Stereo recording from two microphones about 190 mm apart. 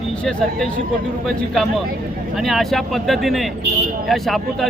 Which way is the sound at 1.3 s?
Centre (ahead or behind).